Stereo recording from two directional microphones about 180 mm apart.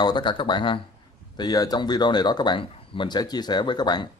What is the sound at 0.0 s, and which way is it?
Speech, 25° left (ahead or behind).